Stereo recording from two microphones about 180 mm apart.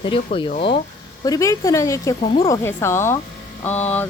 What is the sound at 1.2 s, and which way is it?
Speech, 20° left (ahead or behind).